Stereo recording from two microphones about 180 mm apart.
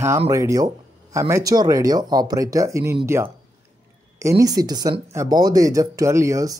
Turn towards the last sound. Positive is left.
turn(degrees=-15)  # may be behind; listen again after turning